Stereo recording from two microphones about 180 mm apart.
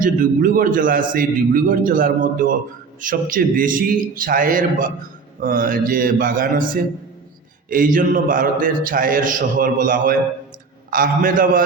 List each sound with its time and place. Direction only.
0.0 s a man's voice: 50° right (ahead or behind)